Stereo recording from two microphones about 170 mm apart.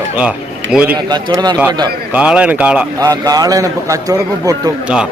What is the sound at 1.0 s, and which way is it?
Speech, 25° right (ahead or behind).